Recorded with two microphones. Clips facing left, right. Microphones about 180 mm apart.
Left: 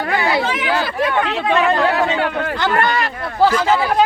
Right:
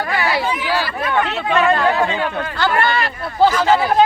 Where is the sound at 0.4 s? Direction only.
90° left.